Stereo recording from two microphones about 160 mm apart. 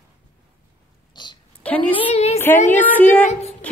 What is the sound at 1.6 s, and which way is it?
Speech, 10° left (ahead or behind).